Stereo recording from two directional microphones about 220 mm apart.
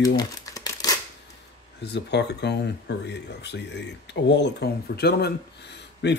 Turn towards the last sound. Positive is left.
turn(degrees=50)  # may be behind; listen again after turning